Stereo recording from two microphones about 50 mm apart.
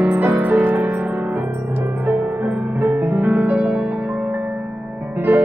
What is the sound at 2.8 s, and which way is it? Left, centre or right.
Music, right.